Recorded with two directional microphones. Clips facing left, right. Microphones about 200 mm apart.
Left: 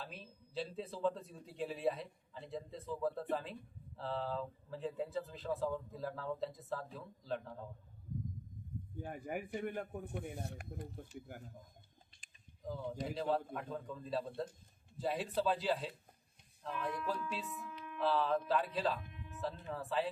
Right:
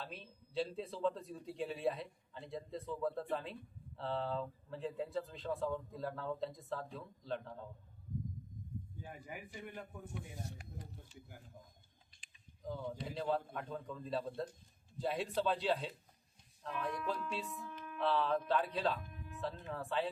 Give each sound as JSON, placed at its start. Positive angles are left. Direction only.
{"t": 0.0, "sound": "a man's voice", "side_deg": 0}
{"t": 9.0, "sound": "a man's voice", "side_deg": 55}
{"t": 12.6, "sound": "a man's voice", "side_deg": 0}